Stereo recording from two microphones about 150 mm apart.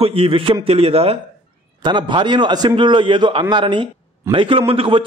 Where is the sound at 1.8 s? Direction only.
30° right (ahead or behind).